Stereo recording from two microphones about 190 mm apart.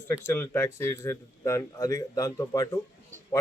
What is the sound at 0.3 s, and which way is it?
Speech, 15° left (ahead or behind).